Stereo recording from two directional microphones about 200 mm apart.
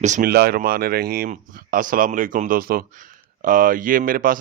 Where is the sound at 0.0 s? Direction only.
40° right (ahead or behind).